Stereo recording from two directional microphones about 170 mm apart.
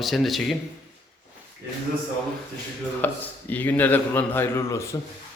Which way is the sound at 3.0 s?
10° left (ahead or behind).